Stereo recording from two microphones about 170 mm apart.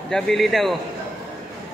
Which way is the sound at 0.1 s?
Centre (ahead or behind).